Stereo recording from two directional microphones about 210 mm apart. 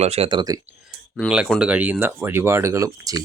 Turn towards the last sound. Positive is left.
turn(degrees=-15)  # may be behind; listen again after turning